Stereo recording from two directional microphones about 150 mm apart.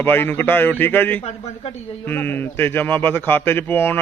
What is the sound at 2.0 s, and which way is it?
A man's voice, 15° left (ahead or behind).